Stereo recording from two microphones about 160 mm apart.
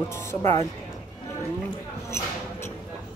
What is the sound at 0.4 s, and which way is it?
Speech, 45° right (ahead or behind).